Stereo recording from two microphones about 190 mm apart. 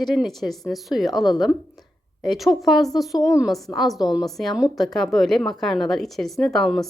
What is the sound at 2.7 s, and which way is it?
Speech, 20° left (ahead or behind).